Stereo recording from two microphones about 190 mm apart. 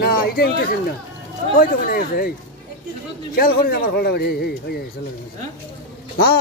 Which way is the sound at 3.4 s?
50° left (ahead or behind).